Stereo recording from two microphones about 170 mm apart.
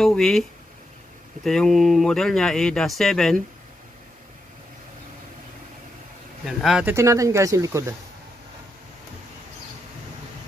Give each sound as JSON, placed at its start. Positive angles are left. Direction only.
{"t": 0.0, "sound": "speech", "side_deg": 5}
{"t": 6.4, "sound": "speech", "side_deg": 0}
{"t": 6.9, "sound": "speech", "side_deg": -15}